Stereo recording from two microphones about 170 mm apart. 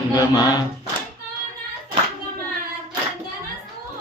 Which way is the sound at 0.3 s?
25° left (ahead or behind).